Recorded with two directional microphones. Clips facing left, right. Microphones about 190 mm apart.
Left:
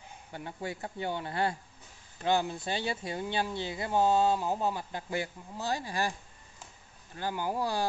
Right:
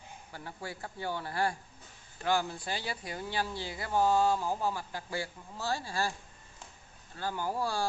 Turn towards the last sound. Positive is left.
turn(degrees=20)  # may be behind; listen again after turning